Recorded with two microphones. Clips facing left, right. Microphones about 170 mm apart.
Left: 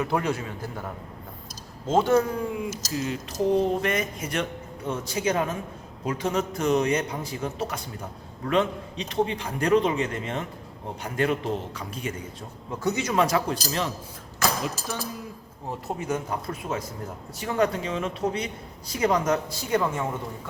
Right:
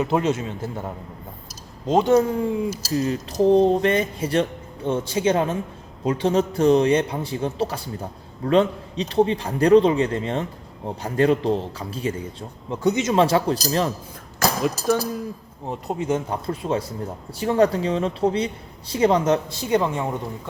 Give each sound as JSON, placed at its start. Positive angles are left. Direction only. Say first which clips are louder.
{"t": 0.0, "sound": "speech", "louder": "right 5 dB", "side_deg": -20}
{"t": 1.9, "sound": "a man's voice", "louder": "right 4 dB", "side_deg": -20}
{"t": 15.7, "sound": "speech", "louder": "right 5 dB", "side_deg": -25}